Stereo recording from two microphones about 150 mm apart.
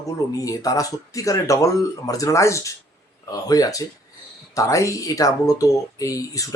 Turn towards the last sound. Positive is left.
turn(degrees=20)  # may be behind; listen again after turning